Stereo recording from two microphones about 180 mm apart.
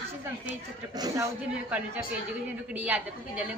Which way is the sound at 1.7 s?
10° right (ahead or behind).